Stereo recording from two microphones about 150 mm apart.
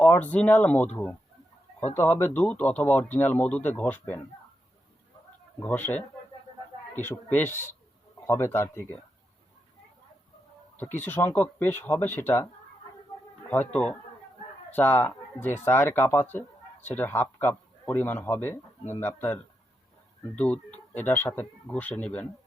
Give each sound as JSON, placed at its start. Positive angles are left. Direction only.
{"t": 0.0, "sound": "a man's voice", "side_deg": 10}
{"t": 2.0, "sound": "a man's voice", "side_deg": 15}
{"t": 5.6, "sound": "a man's voice", "side_deg": 10}
{"t": 7.0, "sound": "a man's voice", "side_deg": 15}
{"t": 10.8, "sound": "a man's voice", "side_deg": 15}
{"t": 14.7, "sound": "a man's voice", "side_deg": 10}